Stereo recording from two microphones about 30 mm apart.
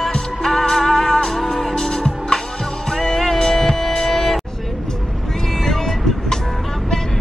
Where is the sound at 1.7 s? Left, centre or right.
Centre.